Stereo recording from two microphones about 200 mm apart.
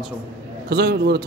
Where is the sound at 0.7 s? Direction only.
55° right (ahead or behind).